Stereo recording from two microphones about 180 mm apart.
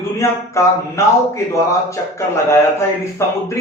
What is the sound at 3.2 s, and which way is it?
Speech, 15° left (ahead or behind).